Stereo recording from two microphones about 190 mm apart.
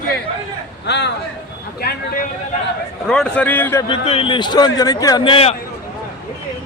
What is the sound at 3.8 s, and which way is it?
A man's voice, 30° left (ahead or behind).